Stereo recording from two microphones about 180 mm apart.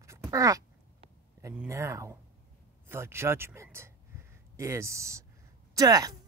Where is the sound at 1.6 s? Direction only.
15° right (ahead or behind).